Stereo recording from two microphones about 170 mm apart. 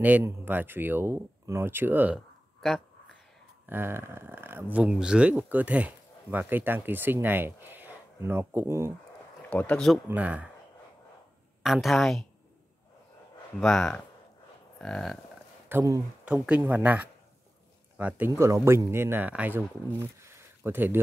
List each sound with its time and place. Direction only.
0.0 s speech: 10° right (ahead or behind)
3.6 s speech: 10° right (ahead or behind)
9.5 s speech: 10° left (ahead or behind)
10.0 s speech: 10° right (ahead or behind)
11.6 s speech: centre (ahead or behind)
13.6 s speech: 5° left (ahead or behind)
15.7 s speech: 20° right (ahead or behind)